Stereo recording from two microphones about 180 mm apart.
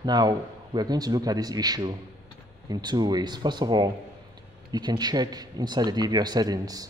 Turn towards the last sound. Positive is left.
turn(degrees=-20)  # may be behind; listen again after turning